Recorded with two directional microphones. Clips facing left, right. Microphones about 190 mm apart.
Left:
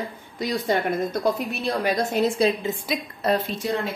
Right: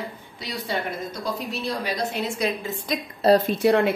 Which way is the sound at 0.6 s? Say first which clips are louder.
Left 4 dB; 55° left (ahead or behind).